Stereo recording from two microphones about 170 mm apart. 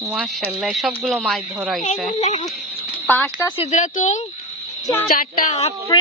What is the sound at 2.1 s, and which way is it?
Speech, 40° left (ahead or behind).